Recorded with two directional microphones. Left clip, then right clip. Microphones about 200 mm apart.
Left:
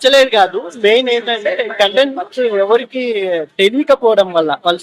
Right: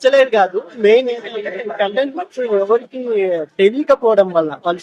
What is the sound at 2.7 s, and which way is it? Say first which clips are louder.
Speech: left 2 dB; centre (ahead or behind).